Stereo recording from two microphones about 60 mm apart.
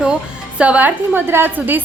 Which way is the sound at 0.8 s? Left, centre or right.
Right.